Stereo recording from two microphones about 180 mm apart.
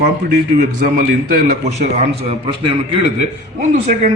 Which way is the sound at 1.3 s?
40° right (ahead or behind).